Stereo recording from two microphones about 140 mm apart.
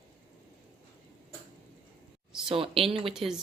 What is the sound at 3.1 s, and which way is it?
Speech, 5° right (ahead or behind).